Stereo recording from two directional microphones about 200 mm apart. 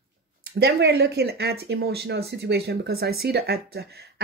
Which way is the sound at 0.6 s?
55° right (ahead or behind).